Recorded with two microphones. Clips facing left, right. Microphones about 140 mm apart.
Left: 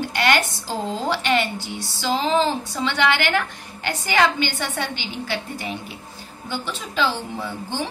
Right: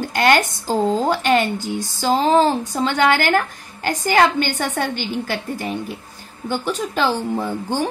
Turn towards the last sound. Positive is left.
turn(degrees=-50)  # may be behind; listen again after turning